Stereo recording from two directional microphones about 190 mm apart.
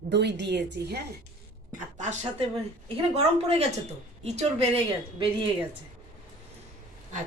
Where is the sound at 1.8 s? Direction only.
40° right (ahead or behind).